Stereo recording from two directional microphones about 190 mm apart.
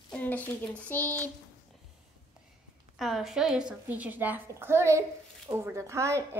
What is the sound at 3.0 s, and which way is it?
A woman's voice, centre (ahead or behind).